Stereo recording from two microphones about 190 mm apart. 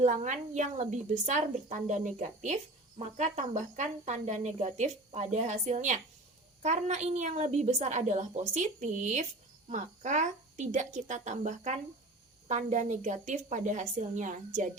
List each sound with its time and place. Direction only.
0.0 s speech: 40° right (ahead or behind)